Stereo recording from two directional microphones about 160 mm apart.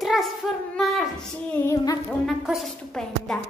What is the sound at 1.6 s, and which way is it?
Music, 20° left (ahead or behind).